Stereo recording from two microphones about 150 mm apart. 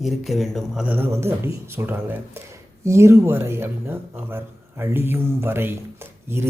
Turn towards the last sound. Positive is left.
turn(degrees=-15)  # may be behind; listen again after turning